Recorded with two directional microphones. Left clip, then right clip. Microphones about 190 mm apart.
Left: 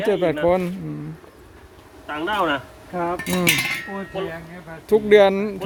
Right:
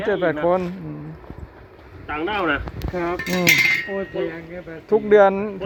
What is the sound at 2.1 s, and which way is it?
Speech, 30° left (ahead or behind).